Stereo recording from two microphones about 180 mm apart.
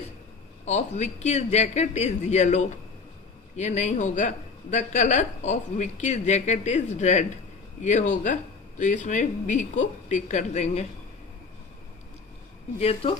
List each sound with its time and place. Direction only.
0.6 s a woman's voice: 40° left (ahead or behind)
12.8 s speech: 30° left (ahead or behind)